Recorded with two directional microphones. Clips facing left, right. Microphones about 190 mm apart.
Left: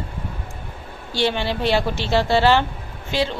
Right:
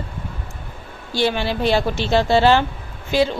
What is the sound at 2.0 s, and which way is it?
Speech, 15° right (ahead or behind).